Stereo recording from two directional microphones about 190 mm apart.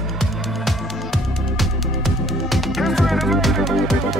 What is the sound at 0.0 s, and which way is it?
Music, centre (ahead or behind).